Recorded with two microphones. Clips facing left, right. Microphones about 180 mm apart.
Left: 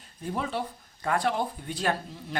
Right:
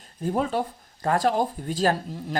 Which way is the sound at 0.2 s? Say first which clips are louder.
Right 6 dB; 45° right (ahead or behind).